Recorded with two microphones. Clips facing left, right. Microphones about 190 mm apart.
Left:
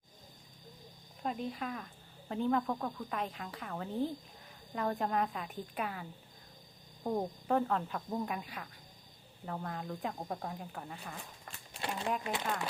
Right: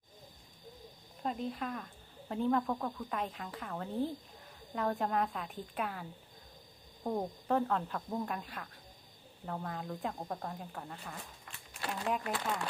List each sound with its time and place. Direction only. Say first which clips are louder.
1.2 s speech: even; centre (ahead or behind)
11.7 s a sound: left 1 dB; 25° left (ahead or behind)
12.2 s speech: even; 20° left (ahead or behind)